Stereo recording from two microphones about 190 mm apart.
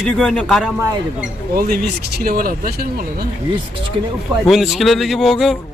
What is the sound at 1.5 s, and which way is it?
Speech, 55° right (ahead or behind).